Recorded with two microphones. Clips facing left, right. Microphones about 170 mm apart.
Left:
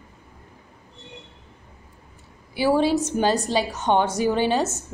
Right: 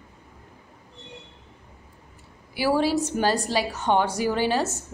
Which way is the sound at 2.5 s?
25° left (ahead or behind).